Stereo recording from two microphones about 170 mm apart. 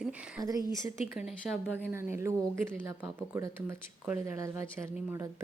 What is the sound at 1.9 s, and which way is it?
A woman's voice, 15° right (ahead or behind).